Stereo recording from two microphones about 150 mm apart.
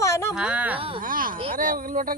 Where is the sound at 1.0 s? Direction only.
70° right (ahead or behind).